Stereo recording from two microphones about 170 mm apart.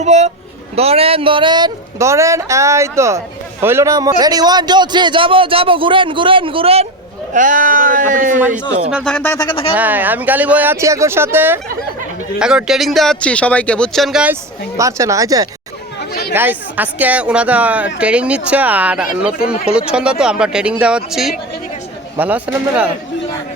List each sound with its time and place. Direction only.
0.0 s a man's voice: 40° right (ahead or behind)
7.3 s speech: 50° right (ahead or behind)
9.0 s speech: 10° left (ahead or behind)
9.4 s speech: 30° left (ahead or behind)
9.7 s speech: 10° right (ahead or behind)
14.8 s a man's voice: 20° right (ahead or behind)
16.0 s chatter: 70° left (ahead or behind)
16.3 s speech: 10° right (ahead or behind)
22.5 s speech: 5° right (ahead or behind)